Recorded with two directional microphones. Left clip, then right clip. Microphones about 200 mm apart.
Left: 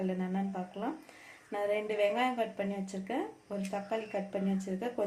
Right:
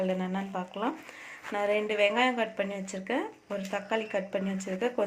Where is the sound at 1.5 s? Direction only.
15° right (ahead or behind).